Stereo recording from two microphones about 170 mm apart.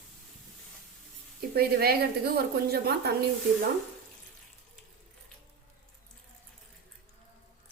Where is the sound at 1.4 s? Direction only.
65° right (ahead or behind).